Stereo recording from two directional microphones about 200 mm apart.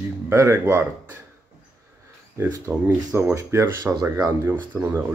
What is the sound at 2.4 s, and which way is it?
Speech, 10° right (ahead or behind).